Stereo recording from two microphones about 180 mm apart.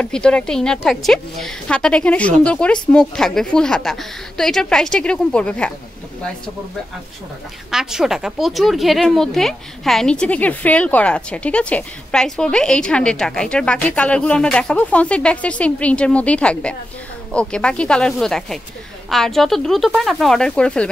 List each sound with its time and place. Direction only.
0.0 s a woman's voice: 5° left (ahead or behind)
7.7 s a woman's voice: 5° right (ahead or behind)